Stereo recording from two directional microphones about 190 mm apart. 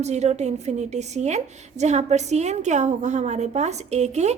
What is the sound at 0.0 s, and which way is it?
A woman's voice, 35° right (ahead or behind).